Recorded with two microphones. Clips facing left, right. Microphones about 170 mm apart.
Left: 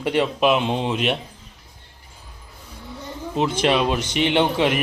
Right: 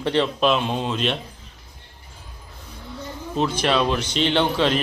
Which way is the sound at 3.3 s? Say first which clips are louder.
Left 1 dB; 20° left (ahead or behind).